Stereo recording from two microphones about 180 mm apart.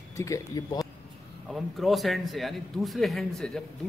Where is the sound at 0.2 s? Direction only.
15° left (ahead or behind).